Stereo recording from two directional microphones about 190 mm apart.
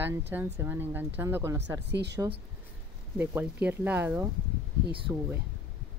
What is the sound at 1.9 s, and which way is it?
Speech, 65° right (ahead or behind).